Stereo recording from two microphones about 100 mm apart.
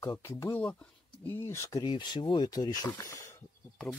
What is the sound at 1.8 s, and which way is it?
Speech, 50° left (ahead or behind).